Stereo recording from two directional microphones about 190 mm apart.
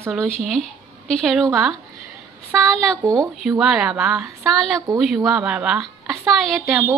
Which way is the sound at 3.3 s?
Centre (ahead or behind).